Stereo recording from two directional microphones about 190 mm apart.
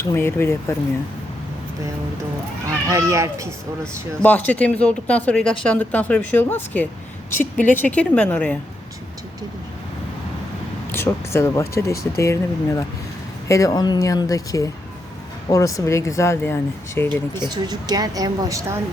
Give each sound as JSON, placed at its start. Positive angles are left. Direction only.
{"t": 0.0, "sound": "speech", "side_deg": 15}
{"t": 2.9, "sound": "speech", "side_deg": -15}
{"t": 4.2, "sound": "speech", "side_deg": 10}
{"t": 10.9, "sound": "speech", "side_deg": 15}
{"t": 17.1, "sound": "speech", "side_deg": -20}